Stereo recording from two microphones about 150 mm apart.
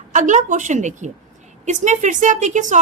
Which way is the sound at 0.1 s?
55° right (ahead or behind).